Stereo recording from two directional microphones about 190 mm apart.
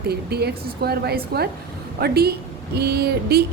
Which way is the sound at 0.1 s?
60° right (ahead or behind).